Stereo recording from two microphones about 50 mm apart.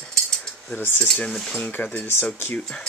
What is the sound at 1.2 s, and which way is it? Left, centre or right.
Speech, centre.